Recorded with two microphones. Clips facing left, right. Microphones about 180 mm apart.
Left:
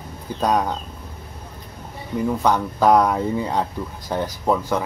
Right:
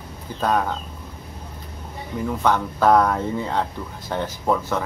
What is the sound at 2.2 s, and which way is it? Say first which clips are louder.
Speech: left 1 dB; 10° left (ahead or behind).